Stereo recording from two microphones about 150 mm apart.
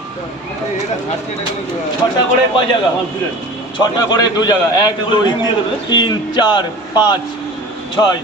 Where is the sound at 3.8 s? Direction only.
25° left (ahead or behind).